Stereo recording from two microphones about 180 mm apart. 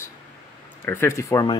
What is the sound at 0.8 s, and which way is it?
Speech, 15° left (ahead or behind).